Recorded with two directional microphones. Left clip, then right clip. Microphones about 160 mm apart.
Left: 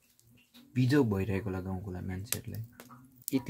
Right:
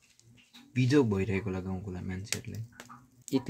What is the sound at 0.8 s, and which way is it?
Speech, 20° left (ahead or behind).